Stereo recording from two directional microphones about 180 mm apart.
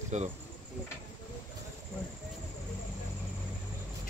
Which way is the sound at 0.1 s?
40° right (ahead or behind).